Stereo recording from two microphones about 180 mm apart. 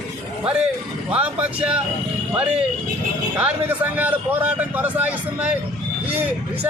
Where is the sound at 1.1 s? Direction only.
5° right (ahead or behind).